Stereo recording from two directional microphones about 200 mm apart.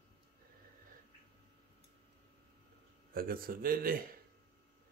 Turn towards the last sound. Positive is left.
turn(degrees=-45)  # may be behind; listen again after turning